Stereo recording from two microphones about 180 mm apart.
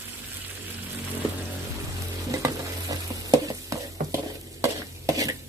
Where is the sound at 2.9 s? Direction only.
20° right (ahead or behind).